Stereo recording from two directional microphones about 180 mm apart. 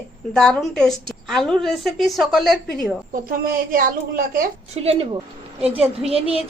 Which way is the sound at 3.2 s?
55° right (ahead or behind).